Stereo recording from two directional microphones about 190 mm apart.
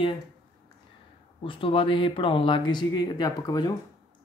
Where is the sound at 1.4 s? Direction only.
25° left (ahead or behind).